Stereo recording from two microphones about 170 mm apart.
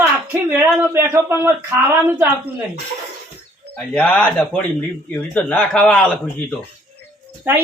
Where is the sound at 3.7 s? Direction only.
10° left (ahead or behind).